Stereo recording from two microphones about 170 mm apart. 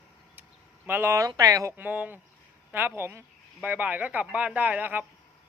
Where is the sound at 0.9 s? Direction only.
10° right (ahead or behind).